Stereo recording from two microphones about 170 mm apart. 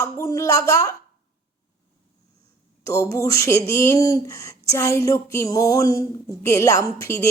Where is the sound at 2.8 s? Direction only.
20° left (ahead or behind).